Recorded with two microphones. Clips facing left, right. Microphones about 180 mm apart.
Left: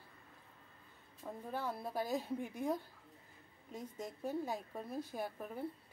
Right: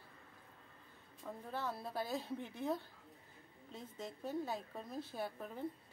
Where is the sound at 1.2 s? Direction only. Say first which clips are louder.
Left 2 dB; 10° left (ahead or behind).